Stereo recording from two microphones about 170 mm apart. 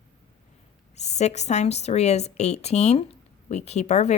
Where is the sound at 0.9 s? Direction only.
40° left (ahead or behind).